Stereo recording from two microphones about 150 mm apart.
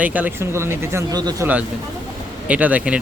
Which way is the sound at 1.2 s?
25° right (ahead or behind).